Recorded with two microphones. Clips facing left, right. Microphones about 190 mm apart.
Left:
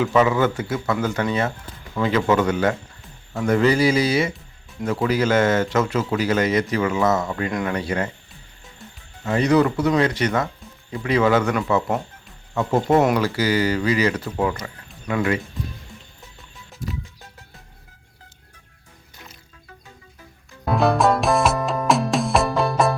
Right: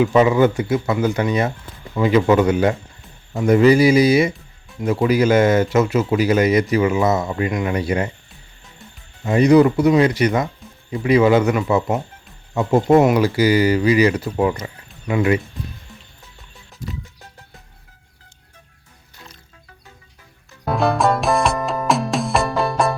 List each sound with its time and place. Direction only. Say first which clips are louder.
0.0 s speech: right 4 dB; 15° right (ahead or behind)
9.2 s speech: right 5 dB; 15° right (ahead or behind)
20.7 s music: even; centre (ahead or behind)